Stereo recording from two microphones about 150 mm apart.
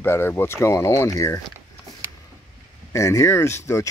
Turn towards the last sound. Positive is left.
turn(degrees=20)  # may be behind; listen again after turning